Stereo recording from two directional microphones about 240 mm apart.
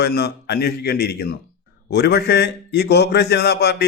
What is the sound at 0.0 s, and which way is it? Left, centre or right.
A man's voice, left.